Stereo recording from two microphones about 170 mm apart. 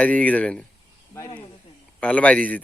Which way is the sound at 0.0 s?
10° left (ahead or behind).